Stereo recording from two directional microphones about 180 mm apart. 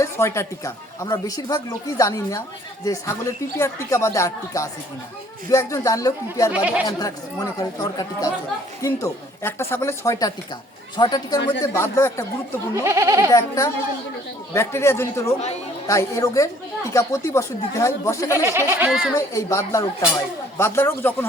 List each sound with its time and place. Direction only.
0.0 s speech: 15° left (ahead or behind)
6.5 s speech: 5° right (ahead or behind)
6.8 s speech: 20° left (ahead or behind)
12.7 s speech: 15° right (ahead or behind)
14.5 s speech: 15° left (ahead or behind)
18.4 s speech: 15° right (ahead or behind)
18.9 s speech: centre (ahead or behind)
19.1 s speech: 15° left (ahead or behind)